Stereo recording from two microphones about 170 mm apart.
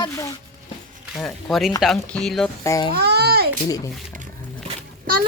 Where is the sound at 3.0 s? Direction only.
70° right (ahead or behind).